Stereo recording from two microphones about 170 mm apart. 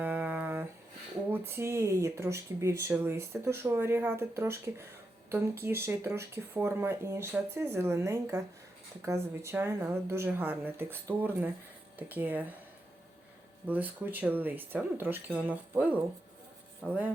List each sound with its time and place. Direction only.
0.0 s a sound: 10° right (ahead or behind)
1.3 s speech: 15° right (ahead or behind)
13.7 s speech: 10° right (ahead or behind)